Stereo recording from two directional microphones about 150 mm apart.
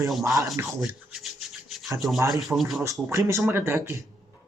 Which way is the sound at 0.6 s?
Centre (ahead or behind).